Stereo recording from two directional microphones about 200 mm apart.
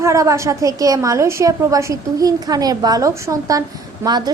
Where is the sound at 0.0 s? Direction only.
15° right (ahead or behind).